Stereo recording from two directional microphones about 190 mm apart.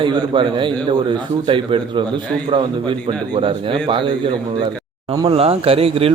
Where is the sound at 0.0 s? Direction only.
25° right (ahead or behind).